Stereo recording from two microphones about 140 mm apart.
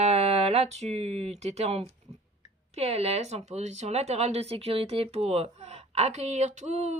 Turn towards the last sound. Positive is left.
turn(degrees=-55)  # may be behind; listen again after turning